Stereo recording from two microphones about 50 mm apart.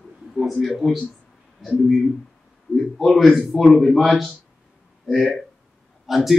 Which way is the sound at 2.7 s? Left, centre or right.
Centre.